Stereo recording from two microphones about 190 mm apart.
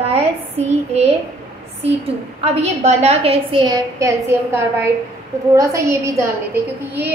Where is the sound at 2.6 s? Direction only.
35° right (ahead or behind).